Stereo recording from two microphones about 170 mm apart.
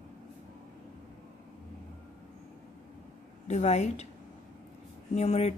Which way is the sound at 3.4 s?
40° left (ahead or behind).